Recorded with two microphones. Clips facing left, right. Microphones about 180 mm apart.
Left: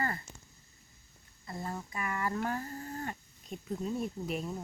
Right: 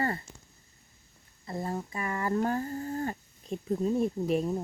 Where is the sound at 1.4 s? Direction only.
30° right (ahead or behind).